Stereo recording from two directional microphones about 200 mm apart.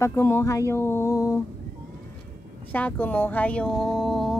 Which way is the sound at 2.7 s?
10° left (ahead or behind).